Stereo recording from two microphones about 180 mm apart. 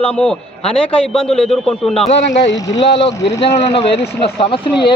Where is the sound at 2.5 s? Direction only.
20° left (ahead or behind).